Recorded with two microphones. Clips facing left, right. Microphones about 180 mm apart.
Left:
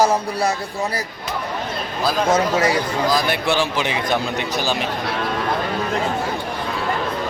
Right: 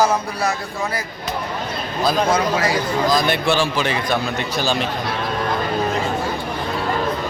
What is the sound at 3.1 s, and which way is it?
A man's voice, 10° left (ahead or behind).